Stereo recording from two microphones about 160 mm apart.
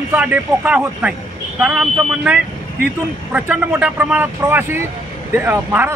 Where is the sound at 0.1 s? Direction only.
10° right (ahead or behind).